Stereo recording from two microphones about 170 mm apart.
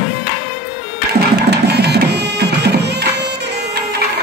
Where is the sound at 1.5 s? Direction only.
75° right (ahead or behind).